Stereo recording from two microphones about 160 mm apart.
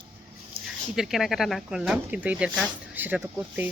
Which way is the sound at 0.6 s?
35° right (ahead or behind).